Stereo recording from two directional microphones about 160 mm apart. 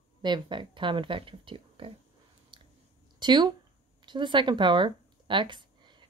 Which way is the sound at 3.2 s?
30° right (ahead or behind).